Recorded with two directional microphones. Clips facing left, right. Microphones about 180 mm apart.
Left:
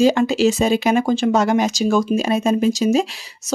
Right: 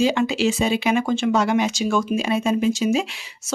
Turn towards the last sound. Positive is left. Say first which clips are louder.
# left 3 dB
turn(degrees=40)  # may be behind; listen again after turning